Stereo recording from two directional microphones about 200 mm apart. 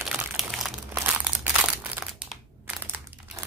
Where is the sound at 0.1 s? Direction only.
Centre (ahead or behind).